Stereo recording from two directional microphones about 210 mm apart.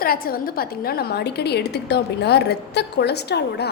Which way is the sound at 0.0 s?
45° left (ahead or behind).